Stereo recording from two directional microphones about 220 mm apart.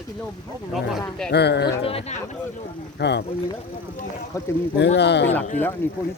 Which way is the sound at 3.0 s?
50° left (ahead or behind).